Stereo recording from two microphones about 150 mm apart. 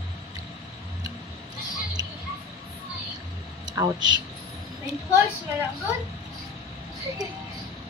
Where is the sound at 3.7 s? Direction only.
20° right (ahead or behind).